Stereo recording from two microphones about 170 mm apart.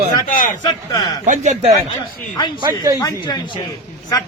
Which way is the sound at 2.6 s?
20° right (ahead or behind).